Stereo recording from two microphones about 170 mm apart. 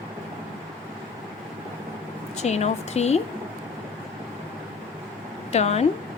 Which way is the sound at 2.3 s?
40° left (ahead or behind).